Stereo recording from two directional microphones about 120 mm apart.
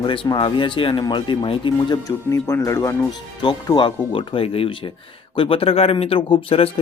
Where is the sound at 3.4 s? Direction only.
40° left (ahead or behind).